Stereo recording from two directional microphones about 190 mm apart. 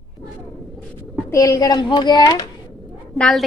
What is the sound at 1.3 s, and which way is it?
A woman's voice, 15° left (ahead or behind).